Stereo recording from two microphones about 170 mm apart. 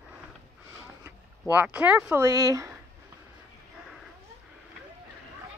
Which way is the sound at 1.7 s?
10° right (ahead or behind).